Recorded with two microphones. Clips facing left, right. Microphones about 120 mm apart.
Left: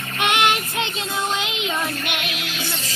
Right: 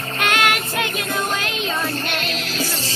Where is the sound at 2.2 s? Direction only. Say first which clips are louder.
Right 4 dB; 40° right (ahead or behind).